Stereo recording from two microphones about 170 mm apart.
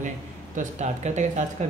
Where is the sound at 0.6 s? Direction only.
45° right (ahead or behind).